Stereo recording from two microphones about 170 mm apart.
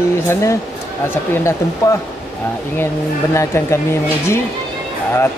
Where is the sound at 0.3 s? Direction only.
15° left (ahead or behind).